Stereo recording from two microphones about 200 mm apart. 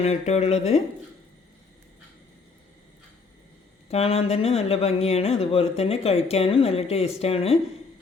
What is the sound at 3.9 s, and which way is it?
Speech, 30° left (ahead or behind).